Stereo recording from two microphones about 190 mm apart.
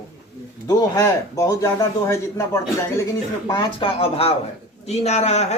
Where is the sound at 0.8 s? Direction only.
15° left (ahead or behind); by 5.6 s 35° left (ahead or behind).